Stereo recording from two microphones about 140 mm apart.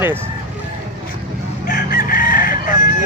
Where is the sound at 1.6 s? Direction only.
85° left.